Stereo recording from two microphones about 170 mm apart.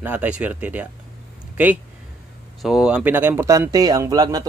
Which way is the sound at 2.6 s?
5° right (ahead or behind).